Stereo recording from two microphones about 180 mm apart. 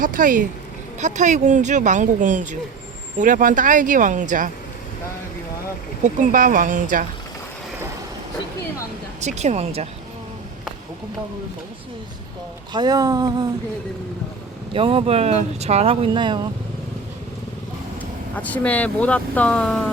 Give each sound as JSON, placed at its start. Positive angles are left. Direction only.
{"t": 0.0, "sound": "speech", "side_deg": -50}
{"t": 6.0, "sound": "speech", "side_deg": -45}
{"t": 9.2, "sound": "speech", "side_deg": -40}
{"t": 12.7, "sound": "a sound", "side_deg": -20}
{"t": 14.7, "sound": "speech", "side_deg": -30}
{"t": 18.0, "sound": "speech", "side_deg": 10}